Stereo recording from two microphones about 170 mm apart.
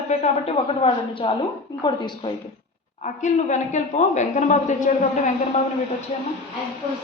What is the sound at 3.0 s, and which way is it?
Speech, 45° left (ahead or behind).